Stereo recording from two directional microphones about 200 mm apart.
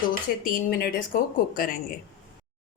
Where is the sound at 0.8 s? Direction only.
45° left (ahead or behind).